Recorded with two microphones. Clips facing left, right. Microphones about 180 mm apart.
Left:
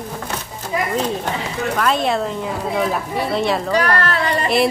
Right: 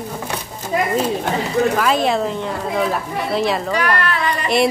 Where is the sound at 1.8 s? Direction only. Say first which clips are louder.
Right 1 dB; centre (ahead or behind).